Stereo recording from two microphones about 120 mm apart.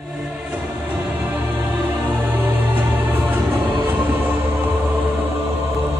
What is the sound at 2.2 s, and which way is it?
Music, 15° right (ahead or behind).